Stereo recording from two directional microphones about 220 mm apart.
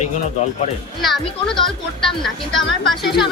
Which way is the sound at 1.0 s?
Centre (ahead or behind).